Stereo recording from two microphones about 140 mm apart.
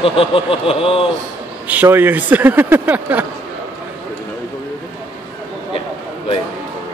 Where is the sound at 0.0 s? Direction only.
40° left (ahead or behind).